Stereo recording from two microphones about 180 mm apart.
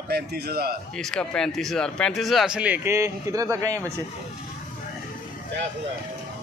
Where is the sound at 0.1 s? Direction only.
60° right (ahead or behind).